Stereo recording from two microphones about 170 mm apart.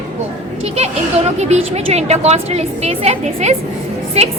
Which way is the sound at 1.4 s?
40° right (ahead or behind).